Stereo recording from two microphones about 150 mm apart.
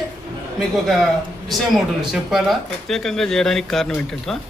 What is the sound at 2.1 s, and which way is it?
A man's voice, centre (ahead or behind).